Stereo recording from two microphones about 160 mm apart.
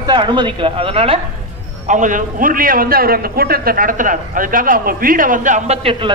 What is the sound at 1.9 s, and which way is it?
A man's voice, 55° right (ahead or behind).